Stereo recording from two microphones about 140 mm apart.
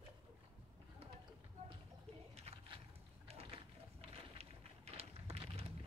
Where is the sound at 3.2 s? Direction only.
45° right (ahead or behind).